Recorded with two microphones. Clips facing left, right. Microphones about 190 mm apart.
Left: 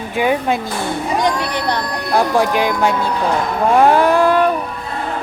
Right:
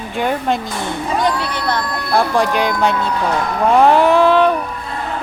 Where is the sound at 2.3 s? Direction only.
5° left (ahead or behind).